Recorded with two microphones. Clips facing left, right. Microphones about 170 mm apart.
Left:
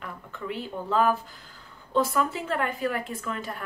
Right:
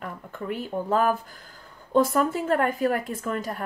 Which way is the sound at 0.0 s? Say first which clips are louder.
Right 3 dB; 45° right (ahead or behind).